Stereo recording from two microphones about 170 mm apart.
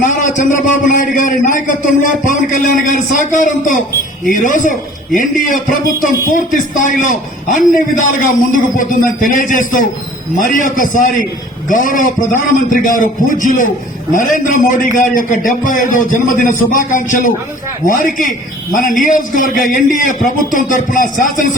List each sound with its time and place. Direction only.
0.0 s a man's voice: 50° left (ahead or behind)